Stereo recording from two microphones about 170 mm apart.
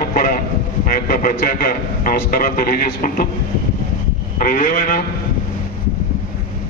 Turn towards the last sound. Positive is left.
turn(degrees=55)  # may be behind; listen again after turning